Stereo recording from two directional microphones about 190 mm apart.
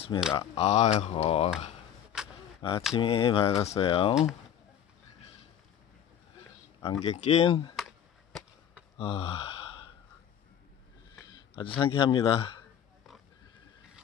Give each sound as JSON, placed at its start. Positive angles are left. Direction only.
{"t": 0.3, "sound": "speech", "side_deg": 30}
{"t": 2.6, "sound": "speech", "side_deg": 25}
{"t": 4.1, "sound": "speech", "side_deg": -5}
{"t": 6.8, "sound": "speech", "side_deg": 30}
{"t": 7.7, "sound": "a sound", "side_deg": 0}
{"t": 8.9, "sound": "gasp", "side_deg": 30}
{"t": 11.3, "sound": "a sound", "side_deg": 25}
{"t": 11.8, "sound": "speech", "side_deg": 25}